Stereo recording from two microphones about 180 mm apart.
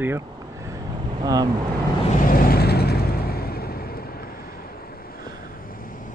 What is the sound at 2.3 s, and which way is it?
Vehicle, 55° left (ahead or behind).